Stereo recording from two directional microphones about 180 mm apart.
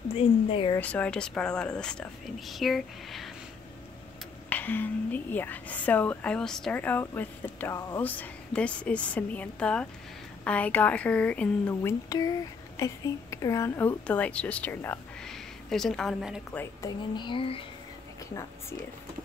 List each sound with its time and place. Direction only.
0.1 s a woman's voice: 30° left (ahead or behind)
0.7 s speech: 10° left (ahead or behind)
4.5 s a woman's voice: 10° left (ahead or behind)
12.1 s a woman's voice: 20° left (ahead or behind); by 16.4 s 5° right (ahead or behind)
16.5 s speech: 20° left (ahead or behind)